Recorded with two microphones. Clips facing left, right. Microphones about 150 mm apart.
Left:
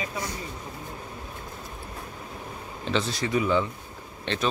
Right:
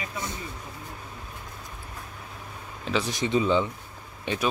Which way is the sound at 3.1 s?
20° right (ahead or behind).